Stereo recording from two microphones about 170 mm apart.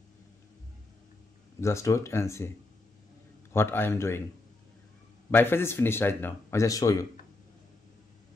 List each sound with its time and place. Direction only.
1.6 s speech: 15° left (ahead or behind)
3.5 s speech: 15° left (ahead or behind)
5.3 s speech: 15° left (ahead or behind)